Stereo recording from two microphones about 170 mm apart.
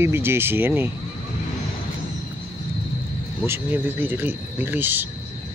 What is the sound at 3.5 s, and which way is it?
Speech, 10° right (ahead or behind).